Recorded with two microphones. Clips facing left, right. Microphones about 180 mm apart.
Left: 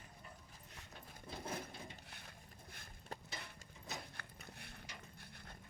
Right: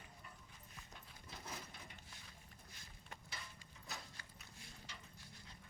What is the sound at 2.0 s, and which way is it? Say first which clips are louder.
Boat: left 4 dB; 60° left (ahead or behind).